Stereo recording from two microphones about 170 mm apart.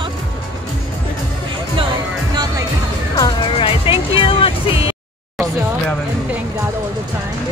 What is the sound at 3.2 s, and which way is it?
Speech, 30° left (ahead or behind).